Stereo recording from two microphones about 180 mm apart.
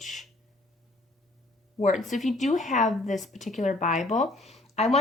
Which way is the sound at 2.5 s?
45° left (ahead or behind).